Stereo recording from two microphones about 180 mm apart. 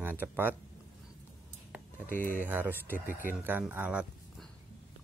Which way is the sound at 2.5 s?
10° right (ahead or behind).